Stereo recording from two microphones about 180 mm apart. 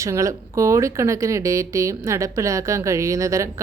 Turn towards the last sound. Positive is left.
turn(degrees=-15)  # may be behind; listen again after turning